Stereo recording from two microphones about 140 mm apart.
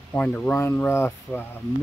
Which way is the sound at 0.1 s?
10° left (ahead or behind).